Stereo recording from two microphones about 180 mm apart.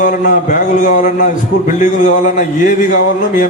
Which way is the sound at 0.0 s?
45° left (ahead or behind).